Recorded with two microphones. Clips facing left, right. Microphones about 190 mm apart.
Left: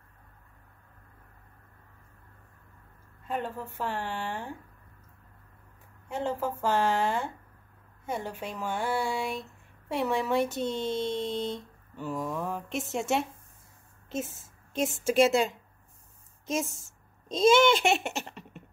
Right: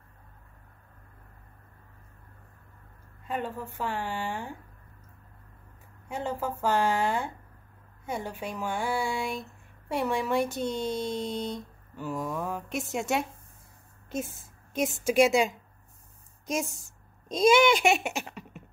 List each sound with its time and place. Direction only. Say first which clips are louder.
3.3 s speech: even; centre (ahead or behind)
6.0 s speech: left 1 dB; centre (ahead or behind)
8.1 s speech: even; centre (ahead or behind)
16.6 s a sound: right 2 dB; 15° right (ahead or behind)
17.3 s speech: even; centre (ahead or behind)
18.1 s a sound: right 1 dB; 5° right (ahead or behind)